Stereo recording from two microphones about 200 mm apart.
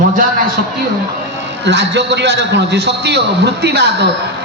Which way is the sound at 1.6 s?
60° right (ahead or behind).